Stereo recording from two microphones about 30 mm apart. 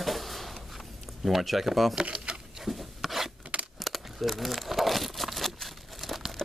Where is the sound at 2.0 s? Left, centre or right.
Right.